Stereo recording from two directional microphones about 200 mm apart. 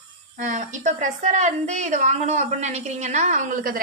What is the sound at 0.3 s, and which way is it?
A woman's voice, 40° right (ahead or behind).